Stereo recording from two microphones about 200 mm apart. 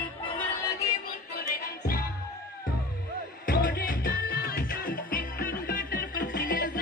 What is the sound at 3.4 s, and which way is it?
Music, 45° left (ahead or behind).